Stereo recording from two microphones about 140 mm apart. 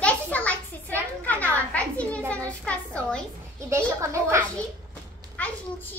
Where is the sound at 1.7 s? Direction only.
10° left (ahead or behind).